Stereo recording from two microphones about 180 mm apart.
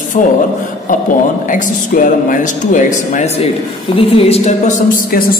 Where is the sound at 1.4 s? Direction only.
45° left (ahead or behind).